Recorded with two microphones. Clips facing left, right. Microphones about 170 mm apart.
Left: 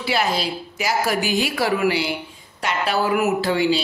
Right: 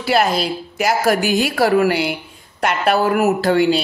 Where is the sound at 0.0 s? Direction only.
50° right (ahead or behind).